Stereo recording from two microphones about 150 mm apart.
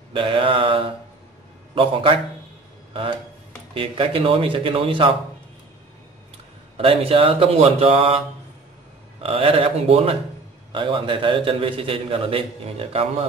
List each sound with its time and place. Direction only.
0.1 s a man's voice: 35° right (ahead or behind)
3.7 s a man's voice: 35° right (ahead or behind)
6.8 s a man's voice: 40° right (ahead or behind)
9.2 s a man's voice: 40° right (ahead or behind)